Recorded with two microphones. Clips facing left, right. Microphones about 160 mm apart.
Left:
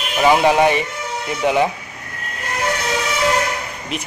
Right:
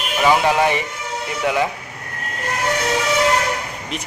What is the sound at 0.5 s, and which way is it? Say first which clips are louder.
Speech: left 3 dB; 20° left (ahead or behind).